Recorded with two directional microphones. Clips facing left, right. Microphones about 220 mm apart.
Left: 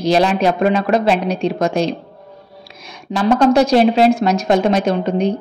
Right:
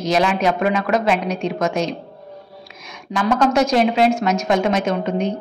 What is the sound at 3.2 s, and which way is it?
A woman's voice, 35° left (ahead or behind).